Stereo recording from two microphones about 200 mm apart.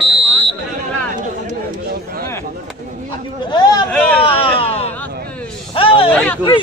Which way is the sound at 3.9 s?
5° left (ahead or behind).